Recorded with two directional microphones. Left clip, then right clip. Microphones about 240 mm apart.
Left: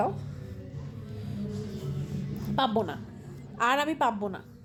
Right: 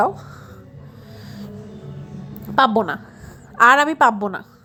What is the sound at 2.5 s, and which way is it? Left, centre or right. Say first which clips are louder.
A woman's voice: right 12 dB; centre.